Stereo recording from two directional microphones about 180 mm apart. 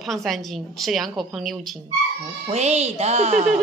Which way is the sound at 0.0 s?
Centre (ahead or behind).